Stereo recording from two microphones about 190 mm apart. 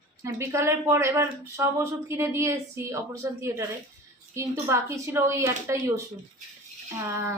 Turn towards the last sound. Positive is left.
turn(degrees=-15)  # may be behind; listen again after turning